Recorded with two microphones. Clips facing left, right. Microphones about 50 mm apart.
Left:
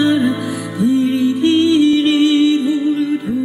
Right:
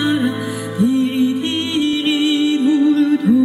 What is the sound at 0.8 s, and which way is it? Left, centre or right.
Music, right.